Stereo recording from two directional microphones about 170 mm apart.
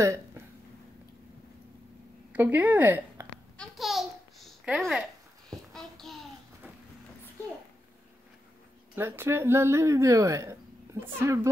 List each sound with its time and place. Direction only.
2.3 s a woman's voice: 10° right (ahead or behind)
3.5 s babbling: centre (ahead or behind)
5.7 s a sound: centre (ahead or behind)
8.9 s a woman's voice: 15° right (ahead or behind)